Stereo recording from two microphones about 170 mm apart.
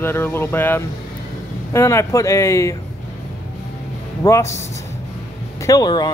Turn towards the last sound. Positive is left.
turn(degrees=25)  # may be behind; listen again after turning